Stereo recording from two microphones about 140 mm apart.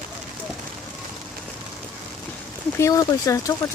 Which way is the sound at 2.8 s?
20° left (ahead or behind).